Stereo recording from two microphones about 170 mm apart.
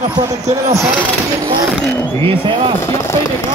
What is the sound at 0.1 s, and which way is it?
Speech, 15° right (ahead or behind).